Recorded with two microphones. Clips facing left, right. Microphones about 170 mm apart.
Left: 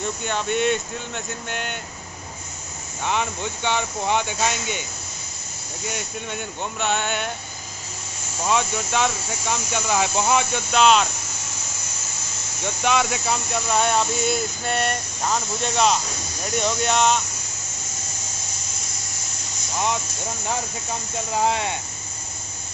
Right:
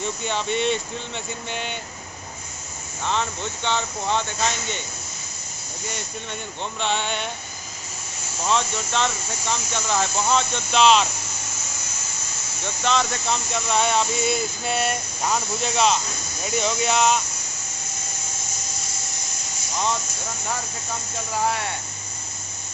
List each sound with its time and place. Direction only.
0.0 s speech: centre (ahead or behind)
3.1 s speech: 10° left (ahead or behind)
5.9 s speech: 5° left (ahead or behind)
8.5 s speech: 10° left (ahead or behind)
12.8 s speech: 10° left (ahead or behind)
21.5 s speech: 20° left (ahead or behind)